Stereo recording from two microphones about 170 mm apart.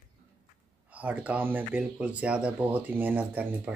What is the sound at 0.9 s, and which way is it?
Speech, 10° right (ahead or behind).